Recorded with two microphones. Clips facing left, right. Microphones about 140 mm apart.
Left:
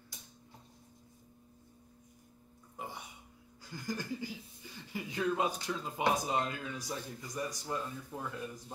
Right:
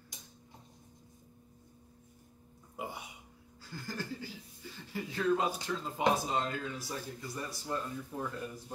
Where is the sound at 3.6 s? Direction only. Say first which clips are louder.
Left 2 dB; 15° left (ahead or behind).